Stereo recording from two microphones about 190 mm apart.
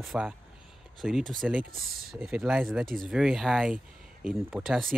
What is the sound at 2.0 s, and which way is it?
Speech, centre (ahead or behind).